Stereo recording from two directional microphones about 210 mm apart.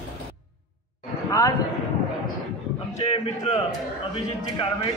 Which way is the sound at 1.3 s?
15° left (ahead or behind).